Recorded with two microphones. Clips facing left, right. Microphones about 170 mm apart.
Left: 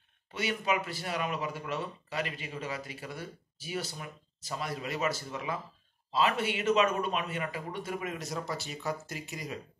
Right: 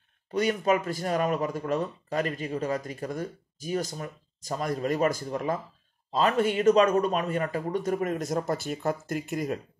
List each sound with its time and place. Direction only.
0.3 s speech: 45° right (ahead or behind)